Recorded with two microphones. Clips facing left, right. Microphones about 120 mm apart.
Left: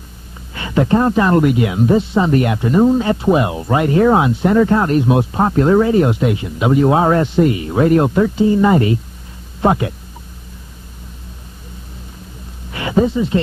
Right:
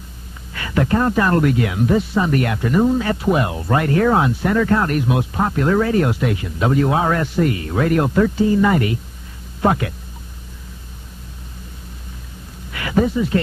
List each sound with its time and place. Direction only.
0.5 s speech: 25° left (ahead or behind)
12.7 s speech: 25° left (ahead or behind)